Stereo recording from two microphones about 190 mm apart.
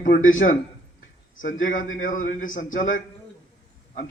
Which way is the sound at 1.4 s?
45° left (ahead or behind).